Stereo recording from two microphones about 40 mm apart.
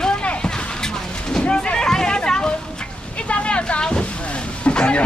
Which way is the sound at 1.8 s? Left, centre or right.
Centre.